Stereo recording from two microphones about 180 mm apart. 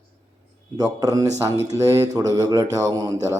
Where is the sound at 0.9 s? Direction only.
20° right (ahead or behind).